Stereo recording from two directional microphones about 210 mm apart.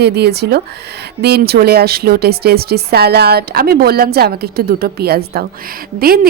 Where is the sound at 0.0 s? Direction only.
50° right (ahead or behind).